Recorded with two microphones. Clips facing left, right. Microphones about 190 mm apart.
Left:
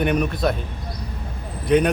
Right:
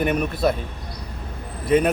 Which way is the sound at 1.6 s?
5° right (ahead or behind).